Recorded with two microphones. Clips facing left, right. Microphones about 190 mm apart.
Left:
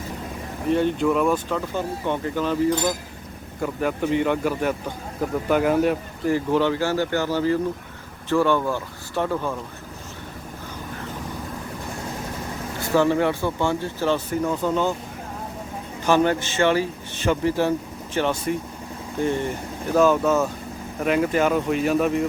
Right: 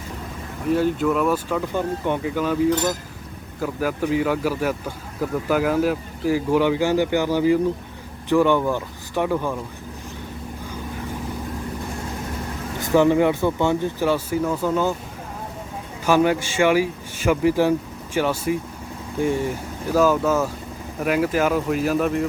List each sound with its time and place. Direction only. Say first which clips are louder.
0.7 s a man's voice: even; 5° right (ahead or behind)
12.8 s speech: right 3 dB; 15° right (ahead or behind)
16.0 s a man's voice: right 1 dB; 10° right (ahead or behind)